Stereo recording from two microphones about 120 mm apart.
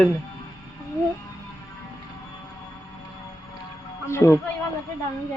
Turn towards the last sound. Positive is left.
turn(degrees=20)  # may be behind; listen again after turning